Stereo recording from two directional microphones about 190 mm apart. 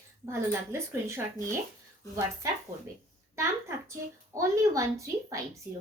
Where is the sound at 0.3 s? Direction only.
15° right (ahead or behind).